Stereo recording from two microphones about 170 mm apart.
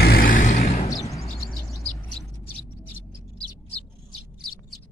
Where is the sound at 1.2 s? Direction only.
20° left (ahead or behind).